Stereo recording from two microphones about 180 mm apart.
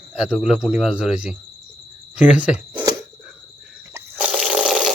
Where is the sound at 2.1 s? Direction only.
5° right (ahead or behind).